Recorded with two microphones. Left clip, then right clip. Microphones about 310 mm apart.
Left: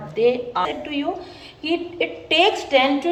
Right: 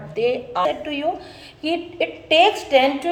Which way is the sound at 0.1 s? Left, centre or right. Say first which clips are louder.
Left 2 dB; right.